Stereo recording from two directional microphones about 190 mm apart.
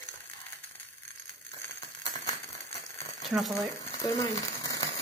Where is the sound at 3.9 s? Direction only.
15° left (ahead or behind).